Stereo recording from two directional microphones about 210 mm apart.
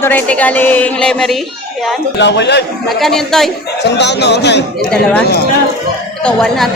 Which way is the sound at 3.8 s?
55° left (ahead or behind).